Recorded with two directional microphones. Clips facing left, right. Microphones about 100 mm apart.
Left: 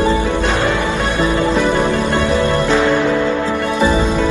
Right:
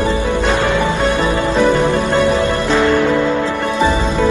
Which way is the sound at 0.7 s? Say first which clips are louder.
Right 2 dB; 20° right (ahead or behind).